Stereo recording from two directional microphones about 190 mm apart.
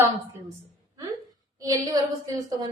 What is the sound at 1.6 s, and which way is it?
A woman's voice, 20° right (ahead or behind).